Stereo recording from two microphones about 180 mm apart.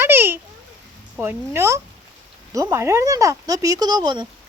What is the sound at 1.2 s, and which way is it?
Speech, 15° right (ahead or behind).